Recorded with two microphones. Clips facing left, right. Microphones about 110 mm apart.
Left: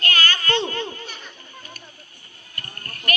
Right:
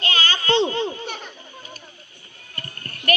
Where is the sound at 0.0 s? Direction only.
20° right (ahead or behind).